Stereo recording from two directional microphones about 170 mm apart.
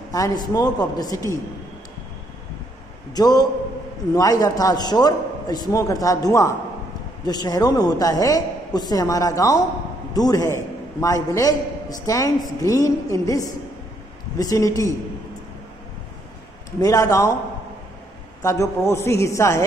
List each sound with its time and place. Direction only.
0.1 s a man's voice: 20° left (ahead or behind)
3.2 s a man's voice: 25° left (ahead or behind)
16.8 s a woman's voice: 20° left (ahead or behind)
18.4 s a woman's voice: 15° left (ahead or behind)